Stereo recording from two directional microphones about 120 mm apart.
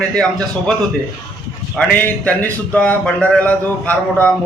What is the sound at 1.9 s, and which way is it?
Speech, 15° left (ahead or behind).